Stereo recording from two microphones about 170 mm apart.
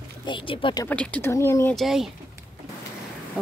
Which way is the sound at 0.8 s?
10° left (ahead or behind).